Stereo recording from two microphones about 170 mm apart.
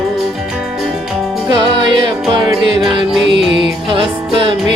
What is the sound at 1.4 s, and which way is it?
Music, 30° right (ahead or behind).